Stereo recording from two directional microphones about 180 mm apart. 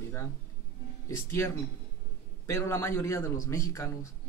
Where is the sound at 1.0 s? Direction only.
15° left (ahead or behind).